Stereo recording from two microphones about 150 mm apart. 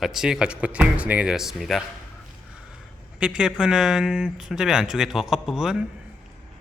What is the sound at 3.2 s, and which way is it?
A man's voice, 5° right (ahead or behind).